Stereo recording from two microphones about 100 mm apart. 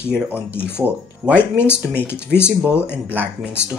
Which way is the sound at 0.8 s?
15° right (ahead or behind).